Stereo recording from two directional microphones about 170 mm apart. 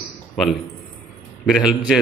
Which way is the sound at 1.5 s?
Centre (ahead or behind).